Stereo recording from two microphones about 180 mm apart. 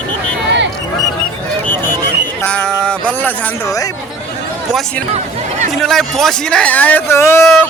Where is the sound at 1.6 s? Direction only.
10° left (ahead or behind).